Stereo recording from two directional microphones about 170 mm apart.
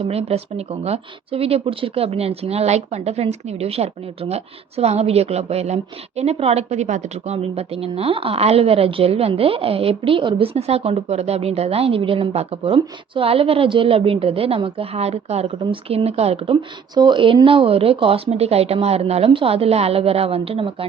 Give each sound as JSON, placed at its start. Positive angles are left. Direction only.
{"t": 0.0, "sound": "speech", "side_deg": -35}